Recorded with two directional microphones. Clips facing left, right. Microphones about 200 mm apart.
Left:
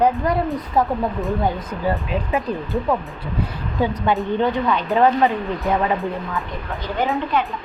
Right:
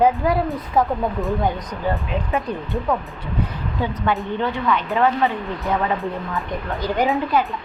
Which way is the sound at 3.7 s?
15° left (ahead or behind).